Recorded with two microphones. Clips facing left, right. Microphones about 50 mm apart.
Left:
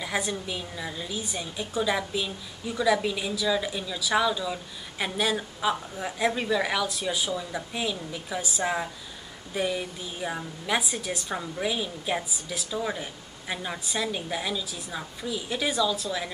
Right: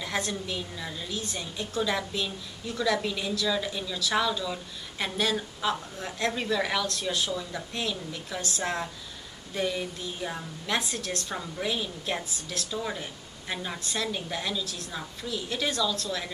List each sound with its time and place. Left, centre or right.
0.0 s a woman's voice: centre